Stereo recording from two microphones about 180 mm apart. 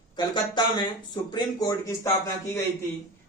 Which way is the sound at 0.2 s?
25° left (ahead or behind).